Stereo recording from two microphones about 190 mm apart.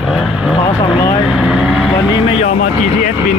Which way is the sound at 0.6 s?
20° left (ahead or behind).